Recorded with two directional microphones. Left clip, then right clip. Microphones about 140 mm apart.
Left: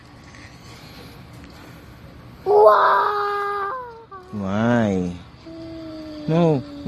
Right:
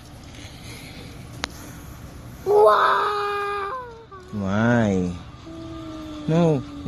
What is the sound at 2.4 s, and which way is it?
Wail, 50° left (ahead or behind).